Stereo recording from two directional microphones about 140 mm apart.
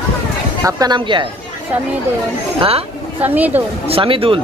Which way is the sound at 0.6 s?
25° right (ahead or behind).